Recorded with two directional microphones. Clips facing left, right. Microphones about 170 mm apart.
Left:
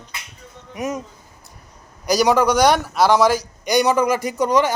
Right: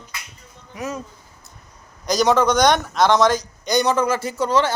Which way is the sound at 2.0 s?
10° left (ahead or behind).